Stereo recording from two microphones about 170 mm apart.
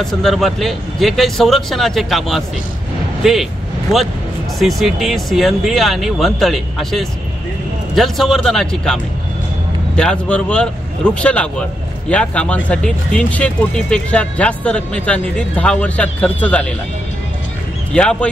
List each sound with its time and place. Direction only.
0.0 s speech: centre (ahead or behind)
4.6 s speech: centre (ahead or behind)
17.9 s speech: 5° left (ahead or behind)